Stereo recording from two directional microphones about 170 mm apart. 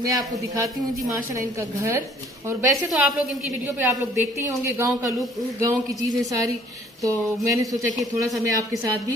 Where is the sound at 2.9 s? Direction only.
Centre (ahead or behind).